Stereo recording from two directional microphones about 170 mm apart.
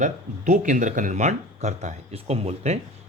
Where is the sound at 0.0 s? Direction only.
50° right (ahead or behind).